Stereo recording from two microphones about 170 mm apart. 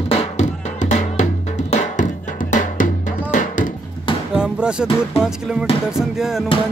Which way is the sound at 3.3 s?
50° left (ahead or behind).